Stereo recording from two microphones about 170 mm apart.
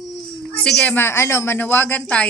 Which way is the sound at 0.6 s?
5° left (ahead or behind).